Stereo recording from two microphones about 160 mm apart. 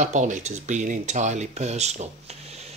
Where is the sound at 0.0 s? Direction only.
50° right (ahead or behind).